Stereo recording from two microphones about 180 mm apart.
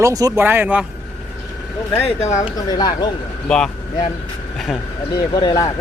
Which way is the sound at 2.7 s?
25° left (ahead or behind).